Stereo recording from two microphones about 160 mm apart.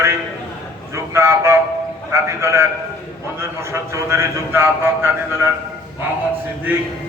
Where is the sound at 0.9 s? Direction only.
15° right (ahead or behind).